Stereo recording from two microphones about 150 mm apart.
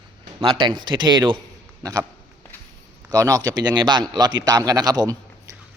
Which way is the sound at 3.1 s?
20° right (ahead or behind).